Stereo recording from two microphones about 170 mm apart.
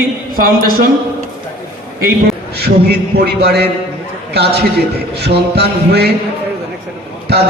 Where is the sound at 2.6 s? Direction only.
70° right (ahead or behind).